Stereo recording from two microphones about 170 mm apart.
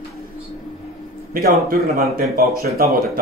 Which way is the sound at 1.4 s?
60° right (ahead or behind).